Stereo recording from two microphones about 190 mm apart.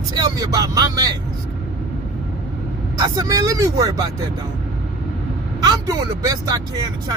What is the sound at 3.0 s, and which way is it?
Speech, 15° right (ahead or behind).